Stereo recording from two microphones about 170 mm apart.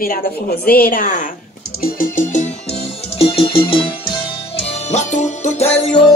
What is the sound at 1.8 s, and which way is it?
Music, 55° left (ahead or behind).